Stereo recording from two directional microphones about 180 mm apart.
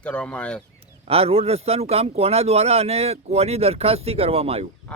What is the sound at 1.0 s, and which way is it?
Speech, 35° right (ahead or behind).